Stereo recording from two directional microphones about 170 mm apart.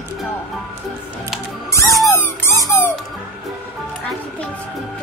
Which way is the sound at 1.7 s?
15° left (ahead or behind).